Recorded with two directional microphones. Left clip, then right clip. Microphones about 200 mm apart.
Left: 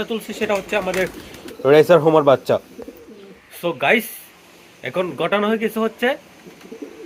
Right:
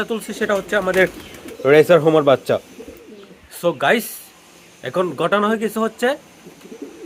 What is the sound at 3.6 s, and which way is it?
Speech, 20° right (ahead or behind).